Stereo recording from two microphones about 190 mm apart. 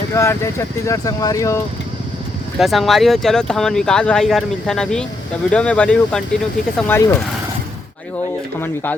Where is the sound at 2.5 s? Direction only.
Centre (ahead or behind).